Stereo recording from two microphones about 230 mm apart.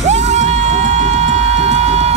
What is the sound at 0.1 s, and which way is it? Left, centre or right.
Music, right.